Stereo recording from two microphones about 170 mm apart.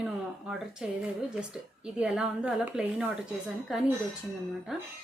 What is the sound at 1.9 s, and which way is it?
A woman's voice, 5° right (ahead or behind).